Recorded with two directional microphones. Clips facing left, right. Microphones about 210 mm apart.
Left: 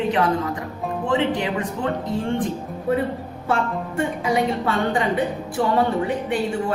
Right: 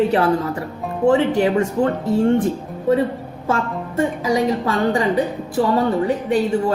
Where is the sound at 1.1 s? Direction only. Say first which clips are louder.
Right 7 dB; 40° right (ahead or behind).